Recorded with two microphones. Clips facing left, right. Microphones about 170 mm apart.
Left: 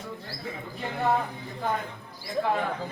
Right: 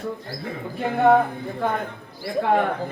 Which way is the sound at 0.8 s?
55° right (ahead or behind).